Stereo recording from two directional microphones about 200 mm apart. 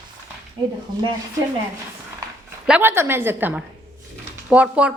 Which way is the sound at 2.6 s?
5° right (ahead or behind).